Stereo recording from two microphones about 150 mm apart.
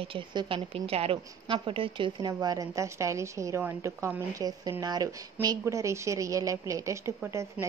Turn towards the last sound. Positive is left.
turn(degrees=-20)  # may be behind; listen again after turning